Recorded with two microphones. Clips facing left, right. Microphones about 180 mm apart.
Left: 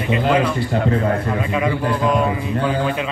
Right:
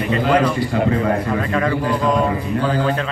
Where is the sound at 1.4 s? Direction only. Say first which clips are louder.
Right 1 dB; 10° left (ahead or behind).